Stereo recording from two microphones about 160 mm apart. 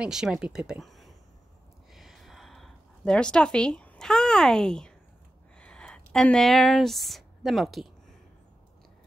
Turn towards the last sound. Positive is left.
turn(degrees=0)  # may be behind; listen again after turning